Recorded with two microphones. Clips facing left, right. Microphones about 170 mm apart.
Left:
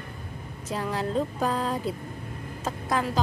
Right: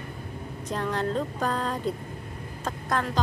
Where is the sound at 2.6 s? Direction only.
5° left (ahead or behind).